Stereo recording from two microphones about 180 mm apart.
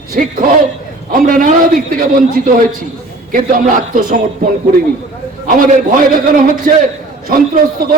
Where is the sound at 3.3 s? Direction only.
50° right (ahead or behind).